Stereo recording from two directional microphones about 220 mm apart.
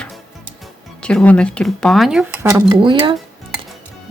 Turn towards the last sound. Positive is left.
turn(degrees=-25)  # may be behind; listen again after turning